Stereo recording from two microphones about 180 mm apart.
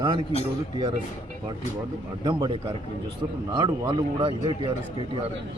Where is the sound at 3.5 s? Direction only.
25° right (ahead or behind).